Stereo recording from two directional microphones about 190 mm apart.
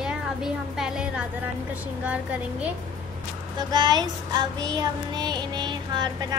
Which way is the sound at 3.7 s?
20° right (ahead or behind).